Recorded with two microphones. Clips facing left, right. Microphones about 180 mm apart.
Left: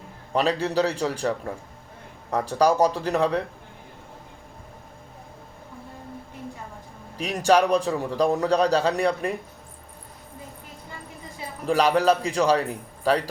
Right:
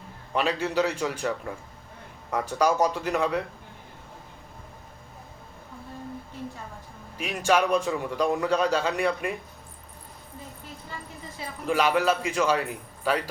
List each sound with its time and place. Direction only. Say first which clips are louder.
0.3 s a man's voice: left 3 dB; 40° left (ahead or behind)
7.2 s a man's voice: left 4 dB; 40° left (ahead or behind)
11.6 s a man's voice: left 3 dB; 40° left (ahead or behind)